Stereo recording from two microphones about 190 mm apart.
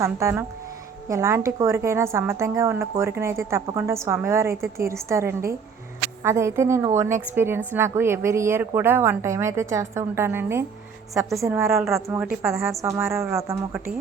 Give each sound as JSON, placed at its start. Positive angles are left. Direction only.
{"t": 0.0, "sound": "a woman's voice", "side_deg": -15}